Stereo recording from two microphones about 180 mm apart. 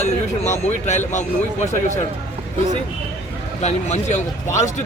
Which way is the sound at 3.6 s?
40° left (ahead or behind).